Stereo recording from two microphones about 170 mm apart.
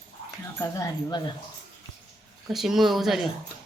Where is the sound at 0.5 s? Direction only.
15° left (ahead or behind).